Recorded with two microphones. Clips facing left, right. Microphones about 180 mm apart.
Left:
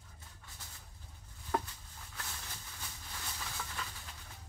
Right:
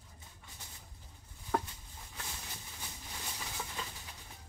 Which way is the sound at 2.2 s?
15° right (ahead or behind).